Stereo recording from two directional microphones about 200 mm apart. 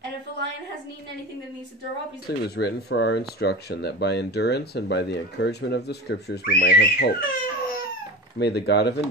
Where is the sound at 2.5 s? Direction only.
55° left (ahead or behind).